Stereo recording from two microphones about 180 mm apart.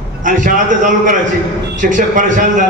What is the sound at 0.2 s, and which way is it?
A man's voice, 45° right (ahead or behind).